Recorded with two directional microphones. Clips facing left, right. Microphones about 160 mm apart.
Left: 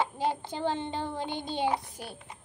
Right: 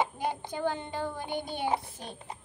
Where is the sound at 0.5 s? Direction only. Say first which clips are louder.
Left 1 dB; 25° left (ahead or behind).